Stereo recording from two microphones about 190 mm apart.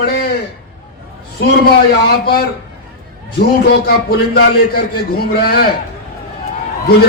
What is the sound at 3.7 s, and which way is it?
A man's voice, 55° left (ahead or behind).